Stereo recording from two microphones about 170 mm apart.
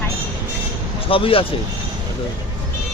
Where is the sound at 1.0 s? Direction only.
35° left (ahead or behind).